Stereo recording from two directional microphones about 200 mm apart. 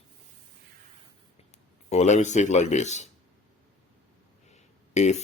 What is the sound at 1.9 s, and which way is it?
Speech, 35° left (ahead or behind).